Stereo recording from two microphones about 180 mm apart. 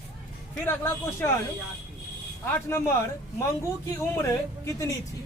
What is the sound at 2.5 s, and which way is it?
Speech, 15° left (ahead or behind).